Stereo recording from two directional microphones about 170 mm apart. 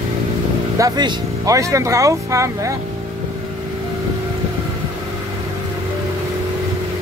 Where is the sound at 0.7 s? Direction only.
20° right (ahead or behind).